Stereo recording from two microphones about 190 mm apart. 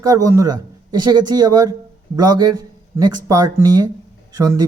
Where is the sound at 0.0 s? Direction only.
20° right (ahead or behind).